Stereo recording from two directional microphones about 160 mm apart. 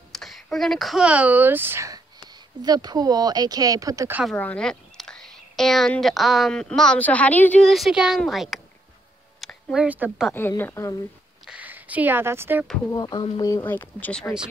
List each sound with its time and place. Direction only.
0.1 s speech: centre (ahead or behind); by 4.2 s 20° right (ahead or behind)
4.4 s speech: 5° left (ahead or behind)
10.6 s speech: 15° left (ahead or behind)
11.4 s a sound: 10° right (ahead or behind)
12.9 s speech: 25° left (ahead or behind)